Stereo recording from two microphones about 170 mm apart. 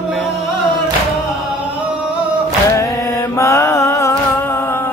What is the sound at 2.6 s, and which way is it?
Music, 15° left (ahead or behind).